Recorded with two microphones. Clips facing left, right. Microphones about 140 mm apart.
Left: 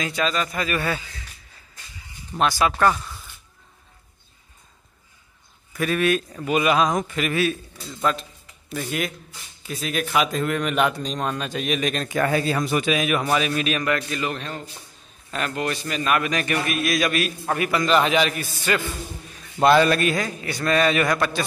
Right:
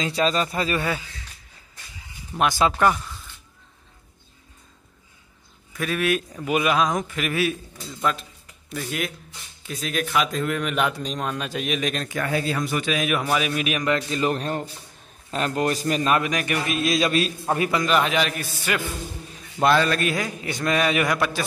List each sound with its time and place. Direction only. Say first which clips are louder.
0.0 s speech: right 2 dB; 30° right (ahead or behind)
0.7 s a man's voice: even; 10° right (ahead or behind)
2.3 s a man's voice: even; 20° right (ahead or behind)
5.7 s speech: left 2 dB; centre (ahead or behind)
8.1 s speech: left 2 dB; centre (ahead or behind)
12.2 s speech: left 4 dB; 45° left (ahead or behind)
12.8 s a man's voice: left 2 dB; centre (ahead or behind); by 14.2 s 25° right (ahead or behind)
14.2 s speech: right 5 dB; 40° right (ahead or behind)
16.1 s a man's voice: left 3 dB; 15° right (ahead or behind)
16.7 s a man's voice: right 3 dB; 25° right (ahead or behind)
17.8 s speech: left 5 dB; centre (ahead or behind)
20.1 s a man's voice: left 2 dB; 10° right (ahead or behind)